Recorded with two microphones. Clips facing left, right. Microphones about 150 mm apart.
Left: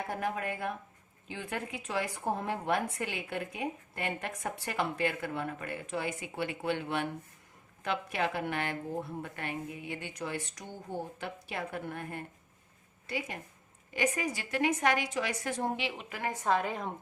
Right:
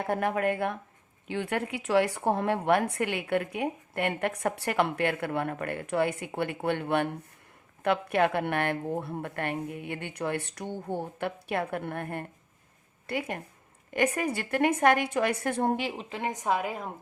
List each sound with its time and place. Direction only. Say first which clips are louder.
0.1 s a woman's voice: right 10 dB; 65° right (ahead or behind); by 16.0 s 45° right (ahead or behind)
16.0 s a woman's voice: even; 25° right (ahead or behind); by 16.9 s 5° right (ahead or behind)